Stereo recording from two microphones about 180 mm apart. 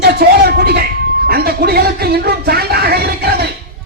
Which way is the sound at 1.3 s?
60° right (ahead or behind).